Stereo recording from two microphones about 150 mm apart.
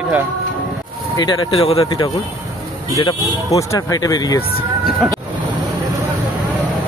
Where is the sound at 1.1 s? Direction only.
30° left (ahead or behind).